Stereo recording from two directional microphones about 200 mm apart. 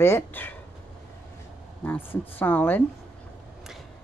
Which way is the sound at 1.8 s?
10° left (ahead or behind).